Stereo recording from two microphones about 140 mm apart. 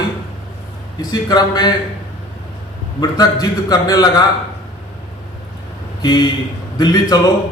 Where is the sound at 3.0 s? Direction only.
30° left (ahead or behind).